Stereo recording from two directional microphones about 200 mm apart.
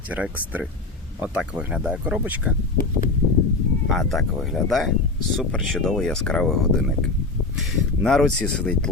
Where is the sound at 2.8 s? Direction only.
45° left (ahead or behind).